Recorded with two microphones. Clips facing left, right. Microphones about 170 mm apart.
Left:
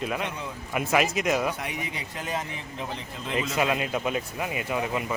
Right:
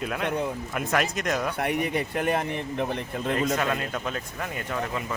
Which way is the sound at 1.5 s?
60° right (ahead or behind).